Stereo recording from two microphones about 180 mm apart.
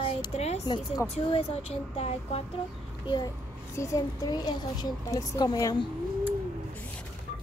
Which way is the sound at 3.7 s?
20° left (ahead or behind).